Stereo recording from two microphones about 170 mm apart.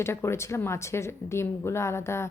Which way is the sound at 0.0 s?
15° left (ahead or behind).